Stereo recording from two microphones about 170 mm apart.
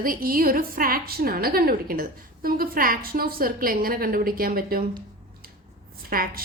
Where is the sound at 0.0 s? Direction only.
60° right (ahead or behind).